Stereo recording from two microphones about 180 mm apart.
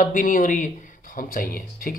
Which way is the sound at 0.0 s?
50° left (ahead or behind).